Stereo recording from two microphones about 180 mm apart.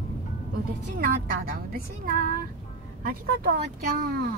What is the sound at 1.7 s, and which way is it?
Speech, 55° right (ahead or behind).